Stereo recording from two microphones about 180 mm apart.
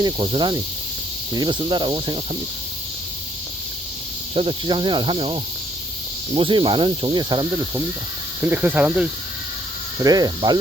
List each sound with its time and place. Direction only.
0.0 s speech: 25° right (ahead or behind)
4.4 s speech: 30° right (ahead or behind); by 9.0 s 10° right (ahead or behind)
10.0 s speech: 20° right (ahead or behind)